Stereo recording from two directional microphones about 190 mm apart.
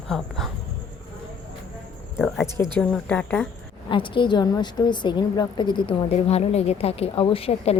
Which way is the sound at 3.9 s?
25° left (ahead or behind).